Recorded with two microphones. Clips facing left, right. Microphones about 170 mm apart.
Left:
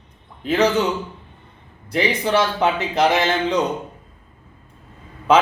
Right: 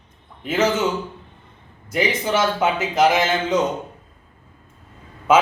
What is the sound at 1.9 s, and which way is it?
A man's voice, 5° right (ahead or behind).